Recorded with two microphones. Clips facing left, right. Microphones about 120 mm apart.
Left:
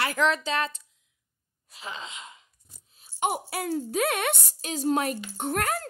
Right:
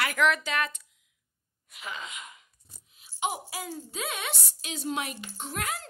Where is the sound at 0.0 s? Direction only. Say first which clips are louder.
Left 1 dB; 30° left (ahead or behind).